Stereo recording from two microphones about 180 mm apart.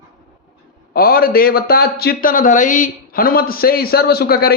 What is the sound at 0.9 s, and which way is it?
A man's voice, 55° left (ahead or behind).